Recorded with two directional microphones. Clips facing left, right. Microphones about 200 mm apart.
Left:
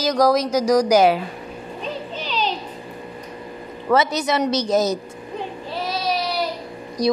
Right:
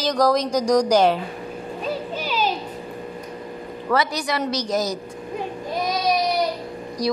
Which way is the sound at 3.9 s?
25° left (ahead or behind).